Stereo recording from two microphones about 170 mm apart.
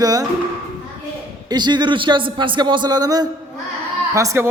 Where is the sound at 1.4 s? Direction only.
25° right (ahead or behind).